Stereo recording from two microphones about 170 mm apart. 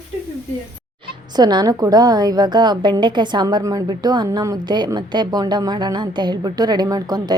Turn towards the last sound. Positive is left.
turn(degrees=-20)  # may be behind; listen again after turning